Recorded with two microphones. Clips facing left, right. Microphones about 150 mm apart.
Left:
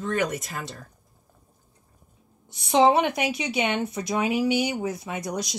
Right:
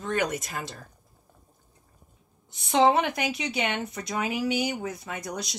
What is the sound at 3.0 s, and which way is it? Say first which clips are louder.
Speech: left 3 dB; 20° left (ahead or behind).